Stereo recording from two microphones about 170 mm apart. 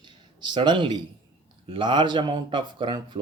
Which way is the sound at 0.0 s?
25° right (ahead or behind).